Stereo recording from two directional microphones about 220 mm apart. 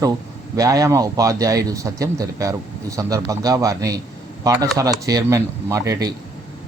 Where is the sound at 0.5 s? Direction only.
15° right (ahead or behind).